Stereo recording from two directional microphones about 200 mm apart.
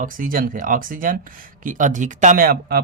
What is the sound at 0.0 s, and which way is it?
Speech, 45° right (ahead or behind).